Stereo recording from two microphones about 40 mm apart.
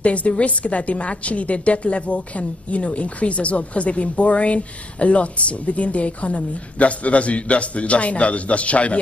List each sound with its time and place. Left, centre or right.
0.0 s a woman's voice: left